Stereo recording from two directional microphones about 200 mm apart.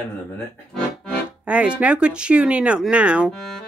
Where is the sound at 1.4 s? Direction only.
5° right (ahead or behind).